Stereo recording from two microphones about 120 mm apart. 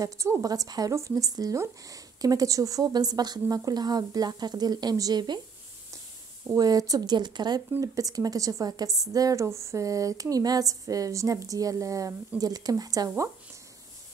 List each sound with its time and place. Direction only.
0.0 s speech: 25° right (ahead or behind)
6.5 s a woman's voice: 30° right (ahead or behind)